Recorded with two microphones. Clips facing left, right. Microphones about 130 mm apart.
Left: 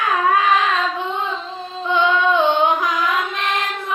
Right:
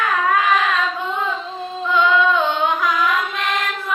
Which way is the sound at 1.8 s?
25° left (ahead or behind).